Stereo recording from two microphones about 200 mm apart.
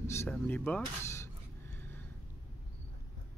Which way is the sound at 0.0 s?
15° left (ahead or behind).